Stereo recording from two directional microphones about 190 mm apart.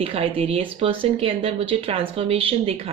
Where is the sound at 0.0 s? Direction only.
30° right (ahead or behind).